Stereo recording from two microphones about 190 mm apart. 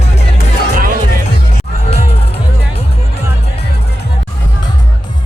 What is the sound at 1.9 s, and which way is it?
Music, 30° left (ahead or behind).